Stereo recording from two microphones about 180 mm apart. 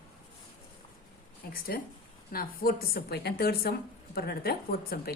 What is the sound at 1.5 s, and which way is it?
A woman's voice, 55° left (ahead or behind).